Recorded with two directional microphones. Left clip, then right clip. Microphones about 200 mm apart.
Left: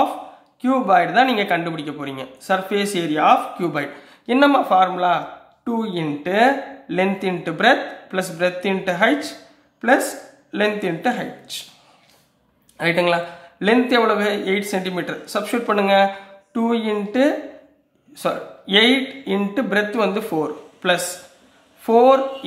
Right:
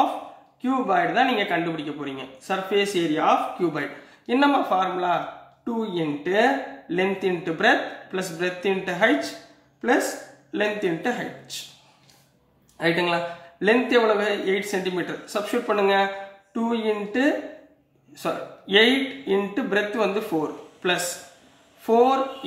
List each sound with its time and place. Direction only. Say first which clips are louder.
0.6 s speech: left 6 dB; 35° left (ahead or behind)
10.5 s speech: left 3 dB; 35° left (ahead or behind)
12.7 s speech: left 4 dB; 35° left (ahead or behind)
21.8 s speech: left 6 dB; 30° left (ahead or behind)